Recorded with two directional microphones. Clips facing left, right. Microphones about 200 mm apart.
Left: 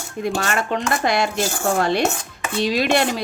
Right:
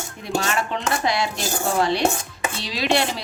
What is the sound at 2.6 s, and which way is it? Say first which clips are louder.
Speech: left 5 dB; 50° left (ahead or behind).